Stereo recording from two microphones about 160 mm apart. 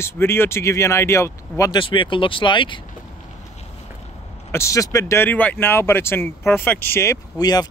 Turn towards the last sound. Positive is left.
turn(degrees=25)  # may be behind; listen again after turning